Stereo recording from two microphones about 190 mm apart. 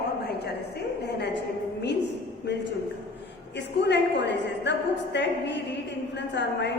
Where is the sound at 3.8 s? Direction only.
65° left (ahead or behind).